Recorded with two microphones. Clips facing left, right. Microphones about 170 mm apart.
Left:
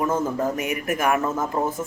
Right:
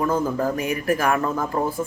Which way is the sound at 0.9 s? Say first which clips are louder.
Left 1 dB; 20° left (ahead or behind).